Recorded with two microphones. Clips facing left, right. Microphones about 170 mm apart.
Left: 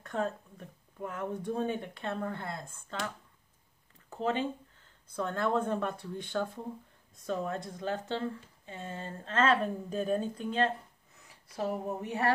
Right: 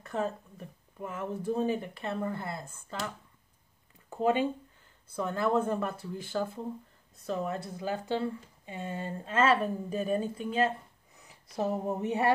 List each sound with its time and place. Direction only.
0.0 s speech: 5° right (ahead or behind)
4.1 s speech: 10° right (ahead or behind)
11.1 s speech: 20° right (ahead or behind)